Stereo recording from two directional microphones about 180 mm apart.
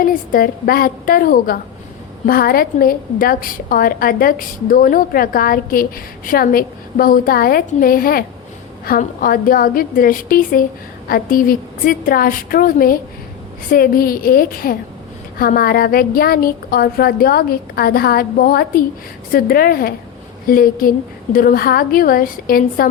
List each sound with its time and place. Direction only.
0.0 s a woman's voice: 50° left (ahead or behind)